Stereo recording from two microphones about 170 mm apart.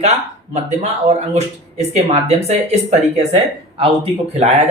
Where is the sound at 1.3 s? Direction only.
40° right (ahead or behind).